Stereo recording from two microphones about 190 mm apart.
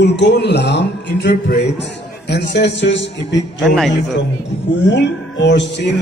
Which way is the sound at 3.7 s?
Centre (ahead or behind).